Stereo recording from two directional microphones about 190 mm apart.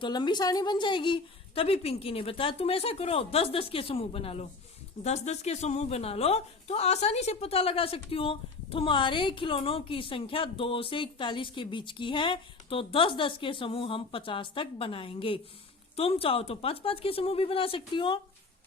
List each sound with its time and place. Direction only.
0.0 s a woman's voice: 25° left (ahead or behind)